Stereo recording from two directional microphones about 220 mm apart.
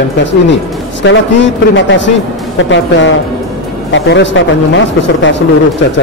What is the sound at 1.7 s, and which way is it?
Speech, 55° left (ahead or behind).